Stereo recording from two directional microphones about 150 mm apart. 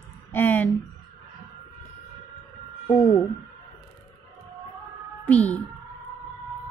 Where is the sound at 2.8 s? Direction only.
20° left (ahead or behind).